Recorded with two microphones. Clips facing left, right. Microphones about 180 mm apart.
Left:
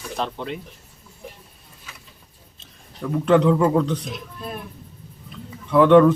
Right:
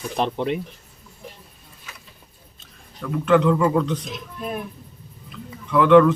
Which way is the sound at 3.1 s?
35° left (ahead or behind).